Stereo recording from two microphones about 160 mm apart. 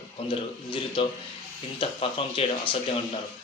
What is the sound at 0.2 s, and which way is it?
Speech, 35° left (ahead or behind).